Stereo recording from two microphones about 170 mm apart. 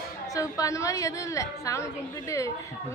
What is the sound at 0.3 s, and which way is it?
A woman's voice, 20° left (ahead or behind).